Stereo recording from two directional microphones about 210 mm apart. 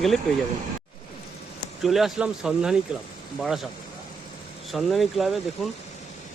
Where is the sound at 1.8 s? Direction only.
Centre (ahead or behind).